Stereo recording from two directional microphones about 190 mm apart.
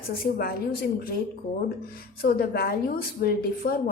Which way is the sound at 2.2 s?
55° left (ahead or behind).